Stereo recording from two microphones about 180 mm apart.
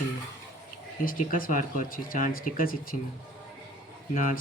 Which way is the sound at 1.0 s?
50° left (ahead or behind).